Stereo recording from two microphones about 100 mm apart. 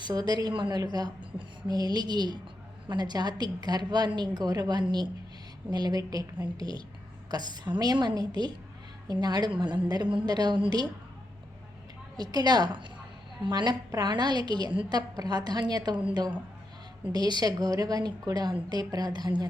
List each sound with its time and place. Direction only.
0.0 s a woman's voice: 45° right (ahead or behind)
12.1 s a woman's voice: 45° right (ahead or behind)